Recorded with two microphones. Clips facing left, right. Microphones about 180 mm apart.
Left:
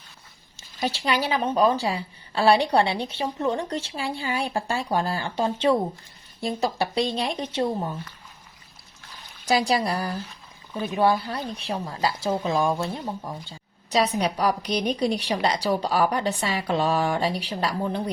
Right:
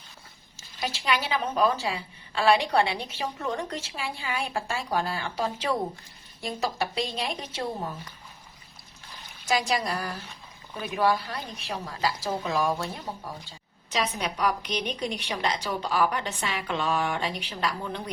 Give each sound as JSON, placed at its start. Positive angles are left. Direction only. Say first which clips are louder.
{"t": 0.9, "sound": "a woman's voice", "louder": "left 3 dB", "side_deg": 35}
{"t": 9.5, "sound": "a woman's voice", "louder": "left 4 dB", "side_deg": 35}
{"t": 13.9, "sound": "a woman's voice", "louder": "left 7 dB", "side_deg": 35}